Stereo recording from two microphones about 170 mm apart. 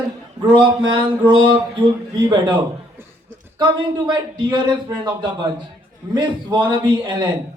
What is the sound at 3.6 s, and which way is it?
A man's voice, 25° right (ahead or behind).